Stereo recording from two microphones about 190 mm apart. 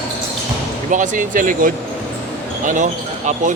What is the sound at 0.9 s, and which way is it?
Speech, 40° right (ahead or behind).